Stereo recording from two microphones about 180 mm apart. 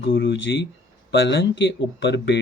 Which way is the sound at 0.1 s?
85° left.